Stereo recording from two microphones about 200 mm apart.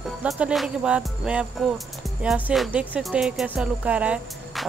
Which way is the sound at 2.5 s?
5° right (ahead or behind).